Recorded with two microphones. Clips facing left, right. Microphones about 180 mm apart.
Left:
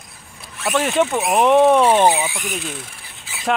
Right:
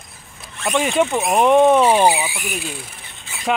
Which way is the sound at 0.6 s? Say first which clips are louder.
Even; centre (ahead or behind).